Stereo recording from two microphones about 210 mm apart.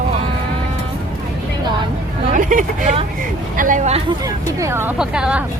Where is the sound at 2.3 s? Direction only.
40° right (ahead or behind).